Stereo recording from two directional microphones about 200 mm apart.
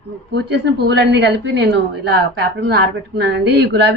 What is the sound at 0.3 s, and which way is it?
A woman's voice, 60° right (ahead or behind).